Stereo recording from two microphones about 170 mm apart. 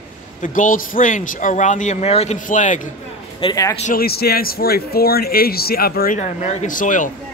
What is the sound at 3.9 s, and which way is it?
Speech, 65° left (ahead or behind).